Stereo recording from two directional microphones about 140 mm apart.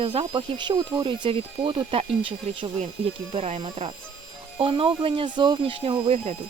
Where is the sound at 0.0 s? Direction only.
40° right (ahead or behind).